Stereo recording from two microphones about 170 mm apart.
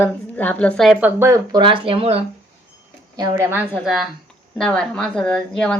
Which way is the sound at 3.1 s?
20° right (ahead or behind).